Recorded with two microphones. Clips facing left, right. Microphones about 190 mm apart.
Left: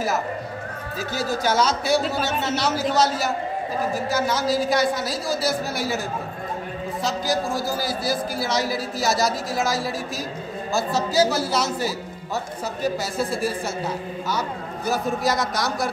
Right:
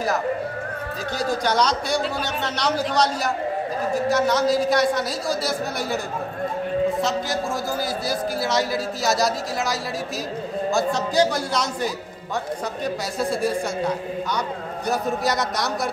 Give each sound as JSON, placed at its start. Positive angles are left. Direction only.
{"t": 1.1, "sound": "speech", "side_deg": 5}
{"t": 7.0, "sound": "a man's voice", "side_deg": 0}